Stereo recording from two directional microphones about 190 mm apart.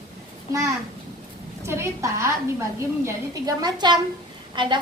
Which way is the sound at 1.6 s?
15° right (ahead or behind).